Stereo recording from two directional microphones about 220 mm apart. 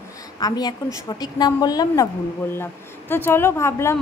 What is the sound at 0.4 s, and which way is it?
A woman's voice, 20° left (ahead or behind).